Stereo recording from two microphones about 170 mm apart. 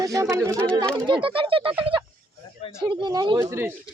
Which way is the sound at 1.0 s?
30° right (ahead or behind).